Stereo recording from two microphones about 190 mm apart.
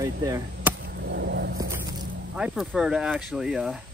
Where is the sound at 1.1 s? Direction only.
60° right (ahead or behind).